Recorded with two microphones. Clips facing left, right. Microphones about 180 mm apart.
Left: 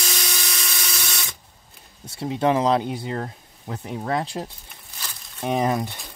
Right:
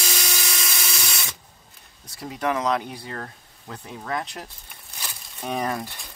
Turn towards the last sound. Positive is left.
turn(degrees=20)  # may be behind; listen again after turning